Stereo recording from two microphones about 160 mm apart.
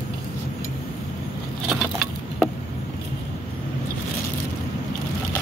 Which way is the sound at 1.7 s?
Centre (ahead or behind).